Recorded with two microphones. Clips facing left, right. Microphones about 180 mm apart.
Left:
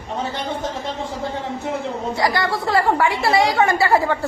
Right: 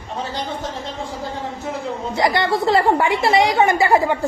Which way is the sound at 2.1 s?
20° right (ahead or behind).